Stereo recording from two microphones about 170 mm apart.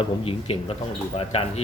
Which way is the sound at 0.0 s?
35° left (ahead or behind).